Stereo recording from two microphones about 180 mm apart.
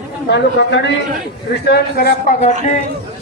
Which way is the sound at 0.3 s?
80° left.